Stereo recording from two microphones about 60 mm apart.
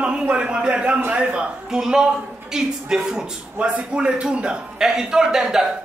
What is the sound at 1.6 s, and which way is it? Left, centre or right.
A man's voice, centre.